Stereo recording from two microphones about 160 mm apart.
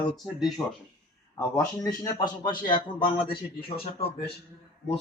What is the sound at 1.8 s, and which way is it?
A man's voice, 25° left (ahead or behind).